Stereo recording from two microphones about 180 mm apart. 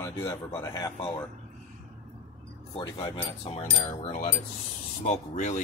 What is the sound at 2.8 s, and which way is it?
Speech, 20° left (ahead or behind).